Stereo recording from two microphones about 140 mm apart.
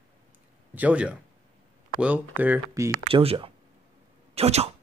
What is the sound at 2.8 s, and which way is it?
Speech, 25° right (ahead or behind).